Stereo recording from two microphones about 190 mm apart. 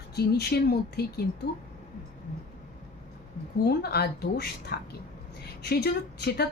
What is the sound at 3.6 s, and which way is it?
Speech, 55° left (ahead or behind).